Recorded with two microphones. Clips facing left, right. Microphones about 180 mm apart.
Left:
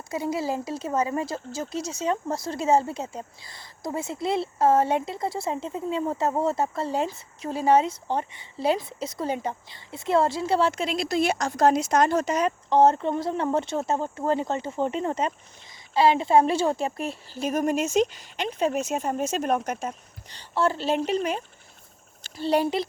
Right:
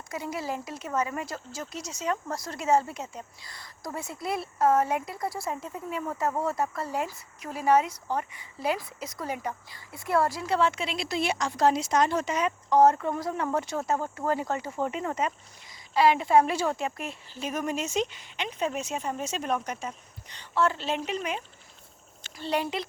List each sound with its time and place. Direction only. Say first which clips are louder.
0.1 s speech: left 6 dB; 30° left (ahead or behind); by 19.9 s 50° left (ahead or behind)
20.3 s a woman's voice: left 2 dB; 30° left (ahead or behind)